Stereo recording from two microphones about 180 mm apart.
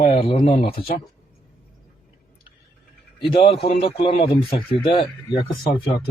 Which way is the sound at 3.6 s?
35° left (ahead or behind).